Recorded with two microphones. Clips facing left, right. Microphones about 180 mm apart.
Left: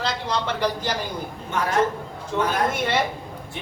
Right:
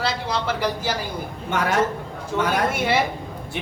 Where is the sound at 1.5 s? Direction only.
90° right.